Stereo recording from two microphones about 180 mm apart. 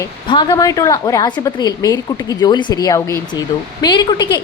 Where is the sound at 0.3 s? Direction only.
25° left (ahead or behind).